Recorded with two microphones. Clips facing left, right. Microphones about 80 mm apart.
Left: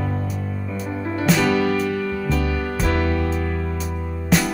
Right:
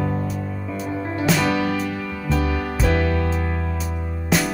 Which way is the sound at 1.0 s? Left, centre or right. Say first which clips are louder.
Left 2 dB; right.